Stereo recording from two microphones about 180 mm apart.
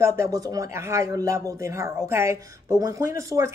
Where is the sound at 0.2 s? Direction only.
20° right (ahead or behind).